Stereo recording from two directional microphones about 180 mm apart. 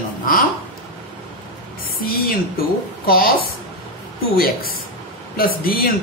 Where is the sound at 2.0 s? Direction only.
55° left (ahead or behind).